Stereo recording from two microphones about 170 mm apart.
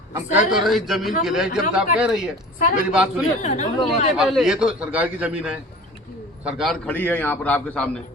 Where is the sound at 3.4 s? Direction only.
45° left (ahead or behind).